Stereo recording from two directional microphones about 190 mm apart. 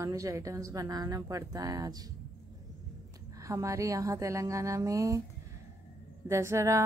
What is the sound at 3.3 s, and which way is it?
A woman's voice, 15° right (ahead or behind).